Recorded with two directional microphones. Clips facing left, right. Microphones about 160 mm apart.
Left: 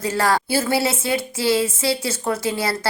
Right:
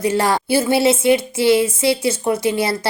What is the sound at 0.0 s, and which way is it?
A woman's voice, 20° right (ahead or behind).